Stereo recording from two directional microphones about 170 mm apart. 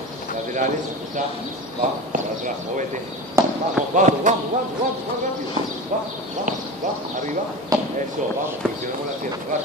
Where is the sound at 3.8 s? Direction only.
5° right (ahead or behind).